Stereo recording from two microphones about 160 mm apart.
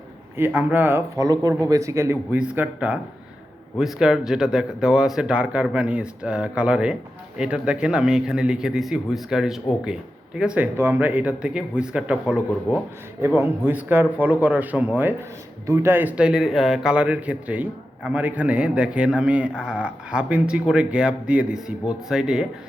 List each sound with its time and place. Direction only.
0.3 s speech: 10° right (ahead or behind)
1.2 s a man's voice: 20° right (ahead or behind); by 22.4 s 5° right (ahead or behind)